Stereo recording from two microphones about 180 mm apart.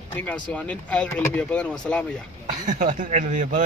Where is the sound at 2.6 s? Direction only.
45° right (ahead or behind).